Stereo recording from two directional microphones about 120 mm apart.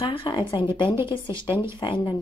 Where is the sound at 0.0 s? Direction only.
50° left (ahead or behind).